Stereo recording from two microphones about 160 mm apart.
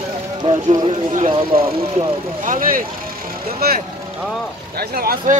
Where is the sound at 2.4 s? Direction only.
60° right (ahead or behind).